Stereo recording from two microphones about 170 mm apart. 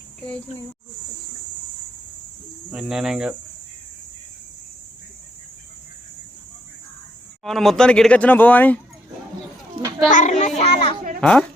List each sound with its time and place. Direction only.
2.7 s speech: 5° right (ahead or behind)
7.4 s speech: centre (ahead or behind)
10.1 s a child's voice: 45° left (ahead or behind)
11.2 s a woman's voice: 5° left (ahead or behind)